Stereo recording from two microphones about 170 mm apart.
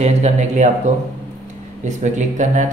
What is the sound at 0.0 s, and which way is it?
Speech, 40° right (ahead or behind).